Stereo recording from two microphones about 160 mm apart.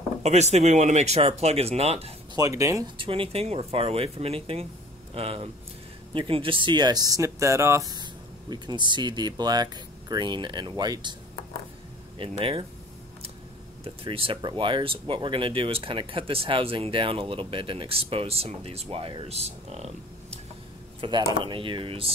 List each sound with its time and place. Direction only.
0.2 s speech: 45° right (ahead or behind)
2.3 s speech: 20° right (ahead or behind)
3.0 s speech: 35° right (ahead or behind)
12.2 s speech: 35° right (ahead or behind)
13.8 s speech: 35° right (ahead or behind)
21.0 s speech: 30° right (ahead or behind)